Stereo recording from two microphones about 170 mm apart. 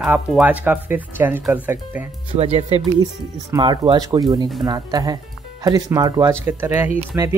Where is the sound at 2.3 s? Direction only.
35° right (ahead or behind).